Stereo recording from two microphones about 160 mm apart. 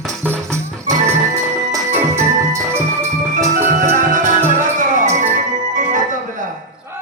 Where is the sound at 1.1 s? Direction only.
15° right (ahead or behind).